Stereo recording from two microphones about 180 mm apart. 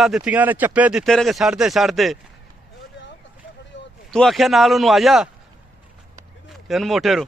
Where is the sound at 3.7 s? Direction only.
90° left.